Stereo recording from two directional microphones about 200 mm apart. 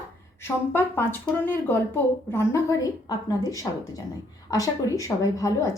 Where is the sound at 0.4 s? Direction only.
10° left (ahead or behind).